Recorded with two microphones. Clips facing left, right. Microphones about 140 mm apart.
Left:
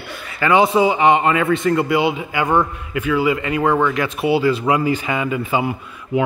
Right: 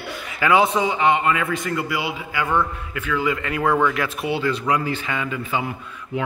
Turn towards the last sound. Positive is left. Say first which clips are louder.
# left 7 dB
turn(degrees=15)  # may be behind; listen again after turning